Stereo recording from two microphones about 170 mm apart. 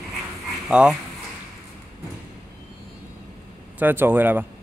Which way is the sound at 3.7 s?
10° right (ahead or behind).